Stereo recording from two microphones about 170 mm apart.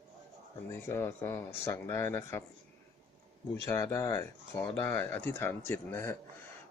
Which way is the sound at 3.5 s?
15° left (ahead or behind).